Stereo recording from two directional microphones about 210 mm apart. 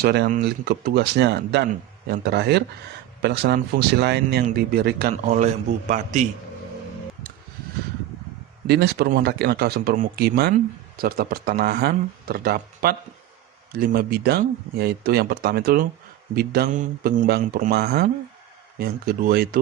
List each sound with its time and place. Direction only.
0.0 s a man's voice: 50° right (ahead or behind)
8.6 s speech: 50° right (ahead or behind)